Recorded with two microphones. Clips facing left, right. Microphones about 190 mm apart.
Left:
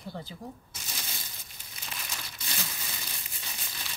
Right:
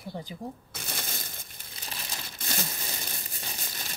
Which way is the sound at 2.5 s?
45° right (ahead or behind).